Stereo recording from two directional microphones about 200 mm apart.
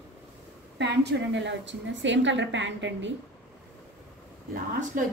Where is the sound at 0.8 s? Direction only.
60° right (ahead or behind).